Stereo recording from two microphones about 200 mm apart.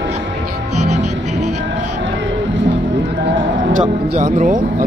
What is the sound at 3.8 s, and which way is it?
Speech, 35° right (ahead or behind).